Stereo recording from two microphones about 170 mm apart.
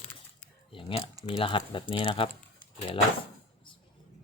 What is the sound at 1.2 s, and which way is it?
Speech, 30° left (ahead or behind).